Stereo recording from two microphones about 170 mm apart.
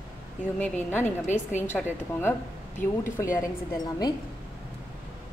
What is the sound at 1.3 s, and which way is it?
Speech, 45° left (ahead or behind).